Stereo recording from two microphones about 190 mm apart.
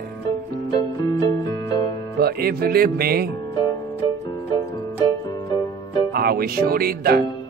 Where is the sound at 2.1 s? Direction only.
55° right (ahead or behind).